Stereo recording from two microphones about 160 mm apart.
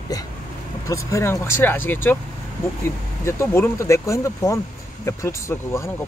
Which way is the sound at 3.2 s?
15° left (ahead or behind).